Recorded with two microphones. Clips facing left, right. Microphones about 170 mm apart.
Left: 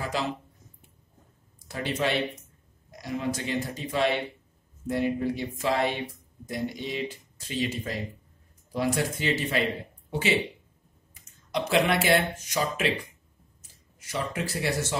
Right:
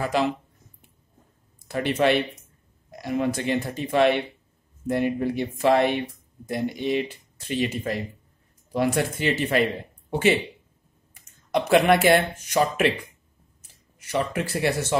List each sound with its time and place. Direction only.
1.7 s speech: 60° right (ahead or behind)
11.5 s speech: 55° right (ahead or behind)